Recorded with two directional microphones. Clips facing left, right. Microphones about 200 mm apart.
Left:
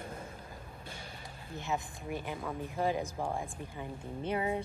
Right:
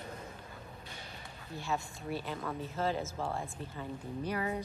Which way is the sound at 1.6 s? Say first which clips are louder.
Even; 15° left (ahead or behind).